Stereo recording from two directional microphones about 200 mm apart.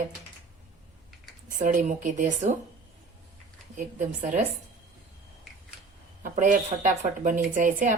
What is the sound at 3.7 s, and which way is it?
Speech, 40° right (ahead or behind).